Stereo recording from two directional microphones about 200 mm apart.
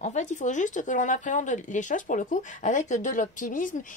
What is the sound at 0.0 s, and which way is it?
Speech, 35° left (ahead or behind).